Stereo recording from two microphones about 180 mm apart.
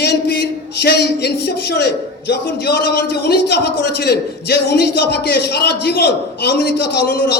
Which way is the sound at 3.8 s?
65° left (ahead or behind).